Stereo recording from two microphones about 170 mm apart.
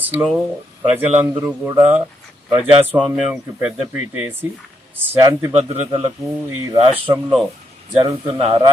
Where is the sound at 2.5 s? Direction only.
30° right (ahead or behind).